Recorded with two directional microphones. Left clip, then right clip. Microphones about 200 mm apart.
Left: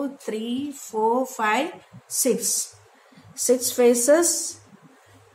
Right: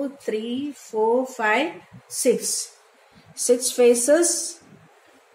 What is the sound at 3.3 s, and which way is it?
A woman's voice, 45° left (ahead or behind).